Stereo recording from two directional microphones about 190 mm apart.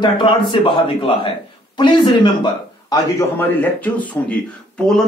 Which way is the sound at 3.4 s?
10° left (ahead or behind).